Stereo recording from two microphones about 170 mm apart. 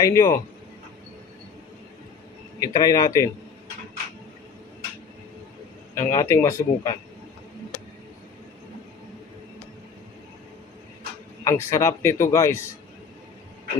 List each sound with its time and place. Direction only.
0.0 s speech: 20° left (ahead or behind)
2.6 s speech: 20° left (ahead or behind)
5.9 s a man's voice: 15° left (ahead or behind)
11.4 s a man's voice: 15° left (ahead or behind)